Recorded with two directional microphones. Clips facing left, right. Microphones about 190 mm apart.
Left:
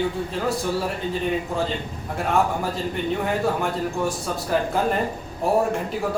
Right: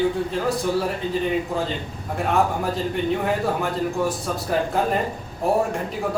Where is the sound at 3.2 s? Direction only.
Centre (ahead or behind).